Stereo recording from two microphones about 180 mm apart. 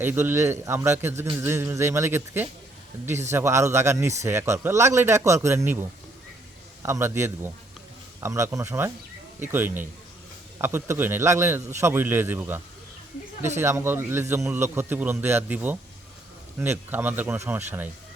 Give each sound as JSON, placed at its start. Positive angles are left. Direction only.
{"t": 0.0, "sound": "a man's voice", "side_deg": -10}
{"t": 6.8, "sound": "a man's voice", "side_deg": -15}